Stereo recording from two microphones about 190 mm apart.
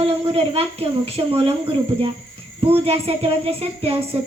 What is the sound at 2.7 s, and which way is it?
A man's voice, 30° right (ahead or behind).